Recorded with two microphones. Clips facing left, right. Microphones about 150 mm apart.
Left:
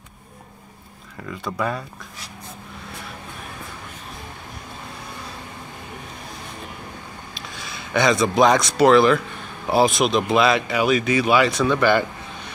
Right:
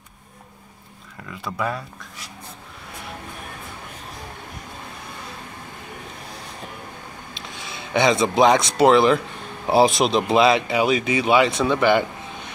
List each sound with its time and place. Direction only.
1.4 s speech: 5° right (ahead or behind)
7.3 s speech: 25° right (ahead or behind)